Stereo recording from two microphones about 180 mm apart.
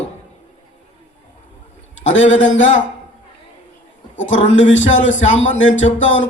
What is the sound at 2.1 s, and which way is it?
Speech, 90° left.